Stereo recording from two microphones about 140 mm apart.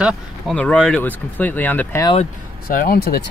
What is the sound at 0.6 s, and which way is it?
Speech, 5° left (ahead or behind).